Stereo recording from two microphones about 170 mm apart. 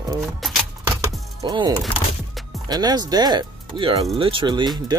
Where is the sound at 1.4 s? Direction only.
25° right (ahead or behind).